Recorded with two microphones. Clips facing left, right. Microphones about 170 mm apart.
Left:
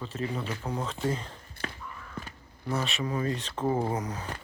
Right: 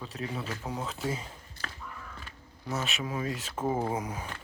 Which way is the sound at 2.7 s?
Centre (ahead or behind).